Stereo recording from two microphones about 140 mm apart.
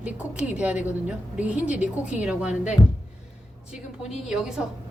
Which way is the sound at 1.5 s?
60° left (ahead or behind).